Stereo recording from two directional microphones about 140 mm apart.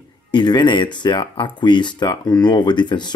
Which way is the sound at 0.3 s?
30° left (ahead or behind).